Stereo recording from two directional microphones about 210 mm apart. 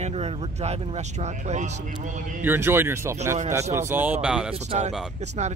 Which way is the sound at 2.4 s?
10° right (ahead or behind).